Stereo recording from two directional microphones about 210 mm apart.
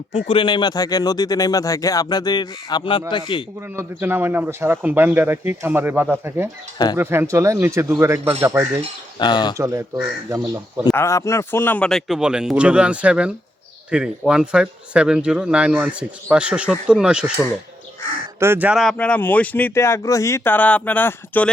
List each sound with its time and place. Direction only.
0.1 s speech: 25° left (ahead or behind)
3.8 s speech: 10° right (ahead or behind)
9.1 s speech: 20° left (ahead or behind)
9.6 s speech: 15° right (ahead or behind)
10.8 s speech: 15° left (ahead or behind); by 17.3 s 5° right (ahead or behind)
18.3 s speech: 10° right (ahead or behind); by 21.5 s 10° left (ahead or behind)